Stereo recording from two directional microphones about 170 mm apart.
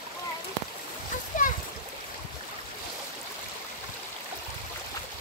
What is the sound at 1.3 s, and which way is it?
Splash, 50° left (ahead or behind).